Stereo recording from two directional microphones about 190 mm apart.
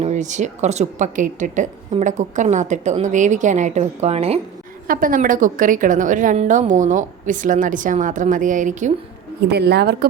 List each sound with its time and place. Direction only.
0.0 s a woman's voice: 40° right (ahead or behind)
4.9 s a woman's voice: 45° right (ahead or behind)
9.5 s a woman's voice: 60° right (ahead or behind)